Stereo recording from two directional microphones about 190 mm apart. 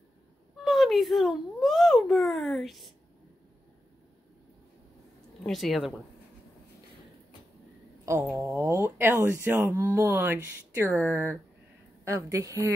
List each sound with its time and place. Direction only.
0.7 s speech: centre (ahead or behind)
5.4 s speech: centre (ahead or behind)
8.0 s a sound: 15° right (ahead or behind)
8.5 s speech: 15° right (ahead or behind)